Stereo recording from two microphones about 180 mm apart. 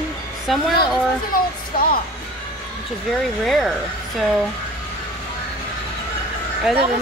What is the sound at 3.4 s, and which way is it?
Speech, centre (ahead or behind).